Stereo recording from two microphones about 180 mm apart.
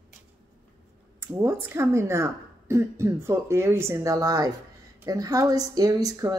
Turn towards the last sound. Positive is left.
turn(degrees=-20)  # may be behind; listen again after turning